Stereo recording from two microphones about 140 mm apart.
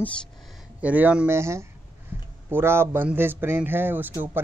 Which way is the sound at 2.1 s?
15° right (ahead or behind).